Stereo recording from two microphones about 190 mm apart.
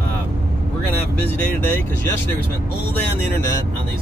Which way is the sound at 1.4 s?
10° left (ahead or behind).